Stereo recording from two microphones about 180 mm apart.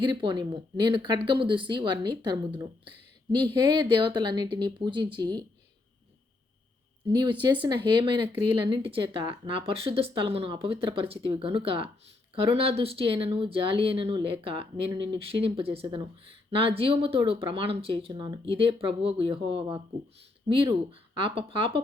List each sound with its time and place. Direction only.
0.0 s speech: 25° right (ahead or behind)
7.1 s speech: 25° right (ahead or behind)